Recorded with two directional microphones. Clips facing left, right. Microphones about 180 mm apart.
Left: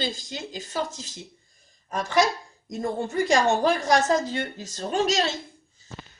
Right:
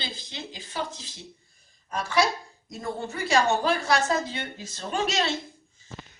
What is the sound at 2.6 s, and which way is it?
A woman's voice, 50° left (ahead or behind).